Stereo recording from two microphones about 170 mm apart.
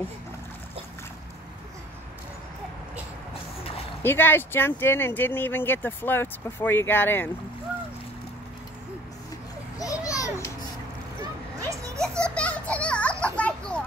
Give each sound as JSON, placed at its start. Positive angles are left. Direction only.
{"t": 4.0, "sound": "speech", "side_deg": 15}
{"t": 9.8, "sound": "children playing", "side_deg": 20}
{"t": 11.7, "sound": "a sound", "side_deg": -20}
{"t": 12.2, "sound": "children playing", "side_deg": 5}